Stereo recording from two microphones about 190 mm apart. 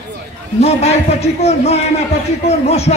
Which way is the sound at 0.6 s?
35° left (ahead or behind).